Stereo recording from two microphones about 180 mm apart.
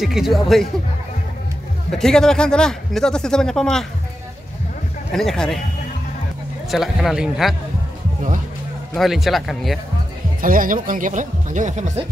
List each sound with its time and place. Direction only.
0.0 s speech: centre (ahead or behind)
1.9 s speech: 5° left (ahead or behind)
5.1 s speech: 5° left (ahead or behind)
6.7 s speech: centre (ahead or behind)
8.9 s speech: centre (ahead or behind)
10.4 s speech: 50° right (ahead or behind)